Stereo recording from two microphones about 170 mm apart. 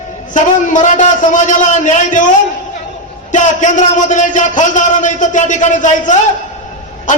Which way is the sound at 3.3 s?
45° left (ahead or behind).